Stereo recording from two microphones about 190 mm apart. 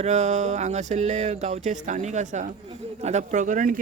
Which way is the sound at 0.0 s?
40° right (ahead or behind).